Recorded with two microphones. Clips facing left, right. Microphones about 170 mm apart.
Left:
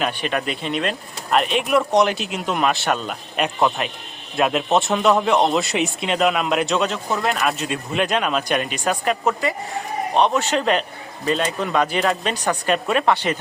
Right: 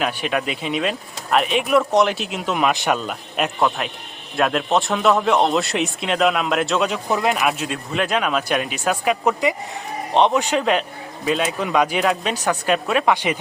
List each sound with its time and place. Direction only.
0.0 s a man's voice: 5° right (ahead or behind)
2.7 s speech: 15° right (ahead or behind)
3.0 s a man's voice: centre (ahead or behind)
9.2 s speech: 15° right (ahead or behind)
10.6 s a man's voice: 5° right (ahead or behind)